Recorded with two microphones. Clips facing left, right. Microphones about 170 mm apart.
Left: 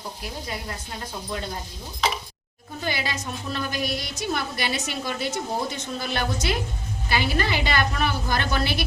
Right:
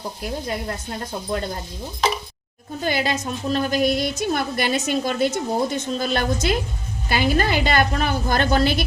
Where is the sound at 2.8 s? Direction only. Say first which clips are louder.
Right 6 dB; 50° right (ahead or behind).